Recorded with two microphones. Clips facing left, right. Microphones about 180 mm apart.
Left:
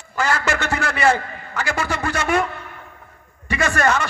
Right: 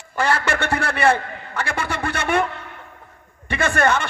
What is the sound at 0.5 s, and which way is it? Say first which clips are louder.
Speech: right 1 dB; 30° right (ahead or behind).